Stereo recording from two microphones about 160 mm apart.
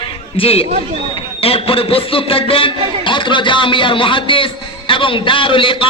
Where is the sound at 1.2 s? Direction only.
35° left (ahead or behind).